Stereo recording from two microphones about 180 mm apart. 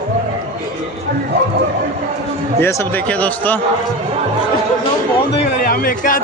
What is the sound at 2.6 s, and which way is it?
Speech, 10° left (ahead or behind).